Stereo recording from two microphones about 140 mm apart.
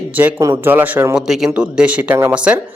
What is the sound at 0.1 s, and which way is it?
A man's voice, 10° right (ahead or behind).